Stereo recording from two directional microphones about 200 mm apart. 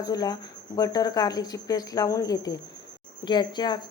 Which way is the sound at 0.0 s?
20° left (ahead or behind).